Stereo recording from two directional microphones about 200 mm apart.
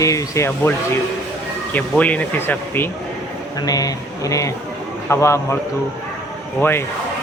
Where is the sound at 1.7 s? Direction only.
5° left (ahead or behind).